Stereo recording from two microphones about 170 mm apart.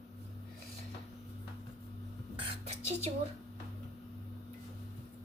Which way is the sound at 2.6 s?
35° right (ahead or behind).